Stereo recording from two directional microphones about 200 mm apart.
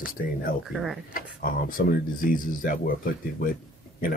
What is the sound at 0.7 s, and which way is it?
Speech, centre (ahead or behind).